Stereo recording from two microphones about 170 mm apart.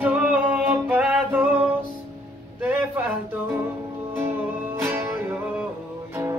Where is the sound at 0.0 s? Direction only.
10° right (ahead or behind).